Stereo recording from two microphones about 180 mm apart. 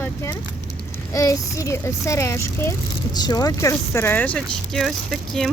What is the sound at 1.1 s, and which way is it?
Speech, 20° left (ahead or behind).